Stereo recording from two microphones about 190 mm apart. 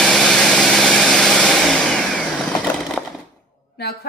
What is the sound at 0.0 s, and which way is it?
Vehicle, 5° left (ahead or behind).